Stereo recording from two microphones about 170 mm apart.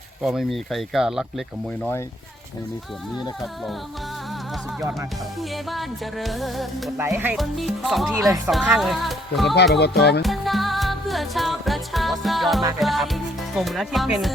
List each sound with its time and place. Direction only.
0.2 s music: centre (ahead or behind)
5.4 s music: centre (ahead or behind)
7.0 s speech: 10° right (ahead or behind)
7.3 s music: centre (ahead or behind)
9.7 s music: 75° left (ahead or behind)
10.2 s music: centre (ahead or behind)
12.8 s speech: centre (ahead or behind)